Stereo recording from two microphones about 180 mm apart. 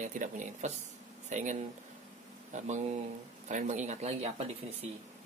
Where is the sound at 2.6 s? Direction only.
40° right (ahead or behind).